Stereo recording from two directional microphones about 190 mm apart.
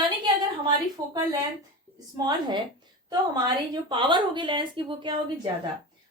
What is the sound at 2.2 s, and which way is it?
A woman's voice, 20° right (ahead or behind).